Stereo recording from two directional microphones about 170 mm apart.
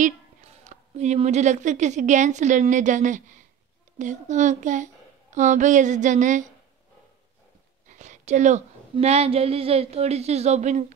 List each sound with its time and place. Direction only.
0.7 s a woman's voice: 40° right (ahead or behind)
7.9 s a sound: 45° right (ahead or behind)
8.9 s speech: 40° right (ahead or behind)